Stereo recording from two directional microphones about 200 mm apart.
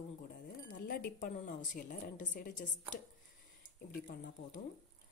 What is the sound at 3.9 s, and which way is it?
Speech, 45° left (ahead or behind).